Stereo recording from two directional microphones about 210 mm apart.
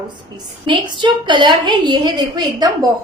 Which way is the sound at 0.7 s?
20° right (ahead or behind).